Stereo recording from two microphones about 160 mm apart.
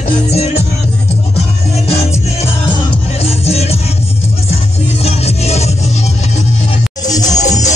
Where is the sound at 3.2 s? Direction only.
40° left (ahead or behind).